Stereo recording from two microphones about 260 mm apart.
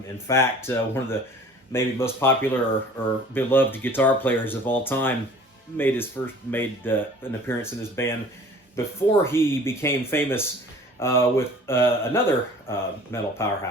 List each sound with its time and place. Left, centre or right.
0.3 s speech: centre